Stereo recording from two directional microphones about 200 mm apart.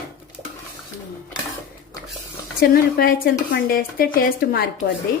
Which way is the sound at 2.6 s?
45° left (ahead or behind).